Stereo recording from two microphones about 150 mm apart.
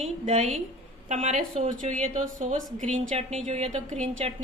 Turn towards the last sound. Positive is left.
turn(degrees=-50)  # may be behind; listen again after turning